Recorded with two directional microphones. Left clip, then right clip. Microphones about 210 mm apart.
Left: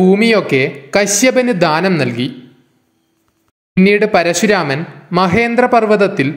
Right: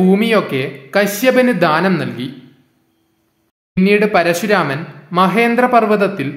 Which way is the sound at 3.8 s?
25° left (ahead or behind).